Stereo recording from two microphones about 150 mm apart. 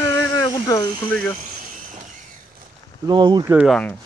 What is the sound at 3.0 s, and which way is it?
Speech, 30° right (ahead or behind).